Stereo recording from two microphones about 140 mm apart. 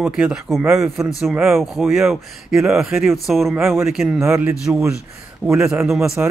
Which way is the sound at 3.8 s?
Centre (ahead or behind).